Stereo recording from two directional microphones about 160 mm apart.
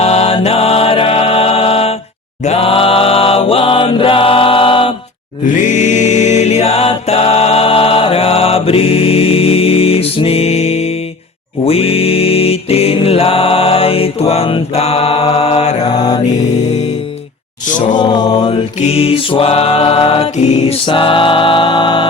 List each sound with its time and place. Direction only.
0.0 s music: 40° left (ahead or behind)
2.4 s mantra: 40° left (ahead or behind)
5.6 s mantra: 50° left (ahead or behind)
16.0 s mantra: 25° left (ahead or behind)
17.9 s a capella: 25° left (ahead or behind)
18.8 s music: 40° left (ahead or behind)